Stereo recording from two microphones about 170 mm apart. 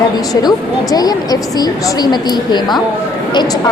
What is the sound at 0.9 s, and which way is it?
A woman's voice, 20° left (ahead or behind).